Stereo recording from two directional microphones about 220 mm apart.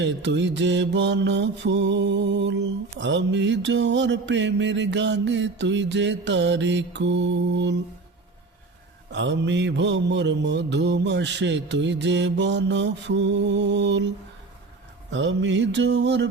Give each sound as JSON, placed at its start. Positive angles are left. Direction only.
{"t": 0.0, "sound": "mantra", "side_deg": -55}
{"t": 9.1, "sound": "mantra", "side_deg": -55}
{"t": 15.1, "sound": "mantra", "side_deg": -55}